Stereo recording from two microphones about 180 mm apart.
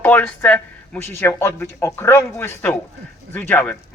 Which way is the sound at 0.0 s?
10° left (ahead or behind).